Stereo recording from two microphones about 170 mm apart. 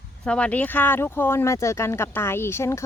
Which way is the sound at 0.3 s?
5° left (ahead or behind).